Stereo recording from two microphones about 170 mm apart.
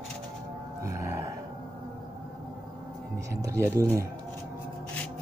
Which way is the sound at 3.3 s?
20° right (ahead or behind).